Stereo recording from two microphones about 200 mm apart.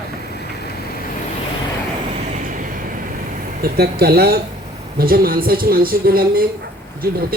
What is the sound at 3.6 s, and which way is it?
Speech, 50° right (ahead or behind).